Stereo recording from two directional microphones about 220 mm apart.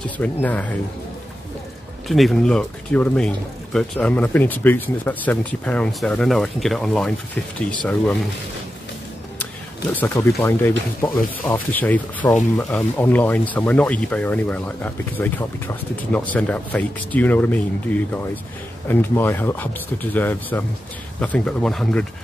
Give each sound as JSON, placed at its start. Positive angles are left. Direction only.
{"t": 0.2, "sound": "speech", "side_deg": 10}
{"t": 2.0, "sound": "speech", "side_deg": 0}
{"t": 9.9, "sound": "speech", "side_deg": 10}